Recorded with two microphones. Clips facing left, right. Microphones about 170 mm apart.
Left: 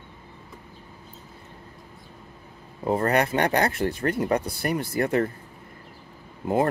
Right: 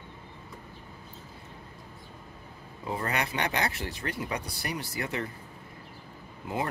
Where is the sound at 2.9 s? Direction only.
50° left (ahead or behind).